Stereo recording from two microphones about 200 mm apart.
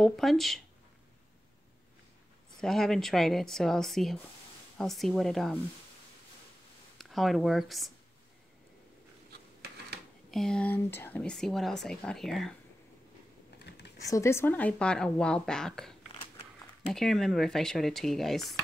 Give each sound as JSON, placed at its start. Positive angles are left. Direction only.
{"t": 0.0, "sound": "speech", "side_deg": 0}
{"t": 2.5, "sound": "speech", "side_deg": 0}
{"t": 7.0, "sound": "speech", "side_deg": 0}
{"t": 9.6, "sound": "a sound", "side_deg": -55}
{"t": 10.3, "sound": "speech", "side_deg": 5}
{"t": 13.6, "sound": "typing", "side_deg": 55}
{"t": 14.0, "sound": "speech", "side_deg": 15}